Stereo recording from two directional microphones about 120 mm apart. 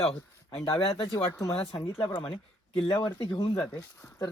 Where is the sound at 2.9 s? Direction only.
40° left (ahead or behind).